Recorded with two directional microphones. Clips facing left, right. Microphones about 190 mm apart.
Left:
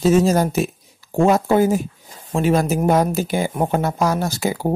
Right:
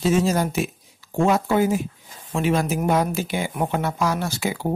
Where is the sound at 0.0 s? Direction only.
40° left (ahead or behind).